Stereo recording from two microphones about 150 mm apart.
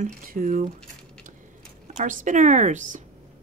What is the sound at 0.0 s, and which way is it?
Speech, 60° right (ahead or behind).